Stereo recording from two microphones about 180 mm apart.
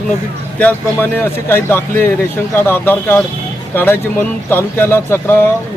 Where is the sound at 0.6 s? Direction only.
10° left (ahead or behind).